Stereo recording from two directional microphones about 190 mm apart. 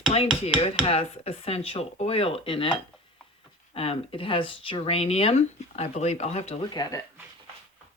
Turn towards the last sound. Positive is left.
turn(degrees=20)  # may be behind; listen again after turning